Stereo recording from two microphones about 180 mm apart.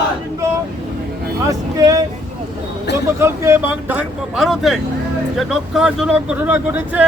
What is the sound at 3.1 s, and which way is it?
Speech, 15° right (ahead or behind).